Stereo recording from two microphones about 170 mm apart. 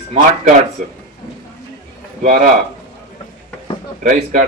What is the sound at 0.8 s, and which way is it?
Speech, 45° right (ahead or behind).